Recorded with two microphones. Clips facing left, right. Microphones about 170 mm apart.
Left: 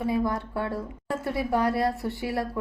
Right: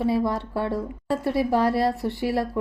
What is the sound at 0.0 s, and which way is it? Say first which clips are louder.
A woman's voice: right 3 dB; 30° right (ahead or behind).